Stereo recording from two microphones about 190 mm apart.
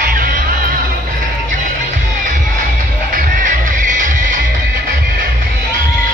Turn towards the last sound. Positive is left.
turn(degrees=-45)  # may be behind; listen again after turning